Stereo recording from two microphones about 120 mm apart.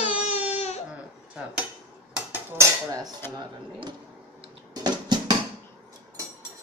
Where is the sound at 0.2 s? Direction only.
65° left (ahead or behind).